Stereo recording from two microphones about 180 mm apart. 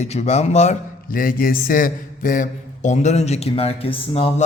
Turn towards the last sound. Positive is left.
turn(degrees=30)  # may be behind; listen again after turning